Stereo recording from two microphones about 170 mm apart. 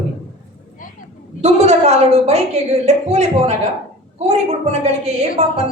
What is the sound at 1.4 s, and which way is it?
A woman's voice, 40° right (ahead or behind).